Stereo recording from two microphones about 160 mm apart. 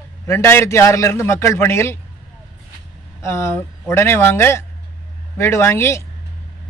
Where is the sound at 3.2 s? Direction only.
15° left (ahead or behind).